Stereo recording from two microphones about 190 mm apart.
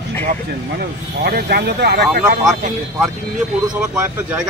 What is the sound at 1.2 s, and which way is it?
Speech, 55° right (ahead or behind).